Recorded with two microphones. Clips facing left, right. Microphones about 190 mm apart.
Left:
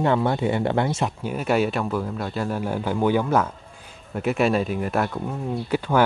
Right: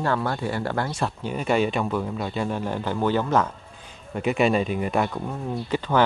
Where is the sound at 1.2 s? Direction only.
5° left (ahead or behind).